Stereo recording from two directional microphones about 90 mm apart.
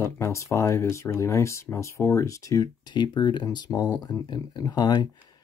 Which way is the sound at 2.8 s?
55° left (ahead or behind).